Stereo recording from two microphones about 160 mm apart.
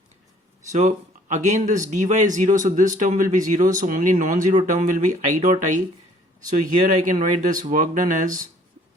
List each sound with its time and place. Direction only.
0.7 s speech: 50° right (ahead or behind)